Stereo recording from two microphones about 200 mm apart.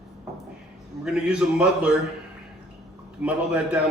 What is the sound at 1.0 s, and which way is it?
Speech, 5° right (ahead or behind).